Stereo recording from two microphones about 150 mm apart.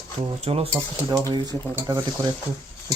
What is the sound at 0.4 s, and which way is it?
Speech, 40° right (ahead or behind).